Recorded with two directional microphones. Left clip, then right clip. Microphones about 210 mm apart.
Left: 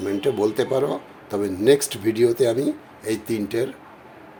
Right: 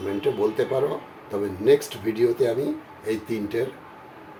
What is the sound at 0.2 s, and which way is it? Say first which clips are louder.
Speech: left 1 dB; 55° left (ahead or behind).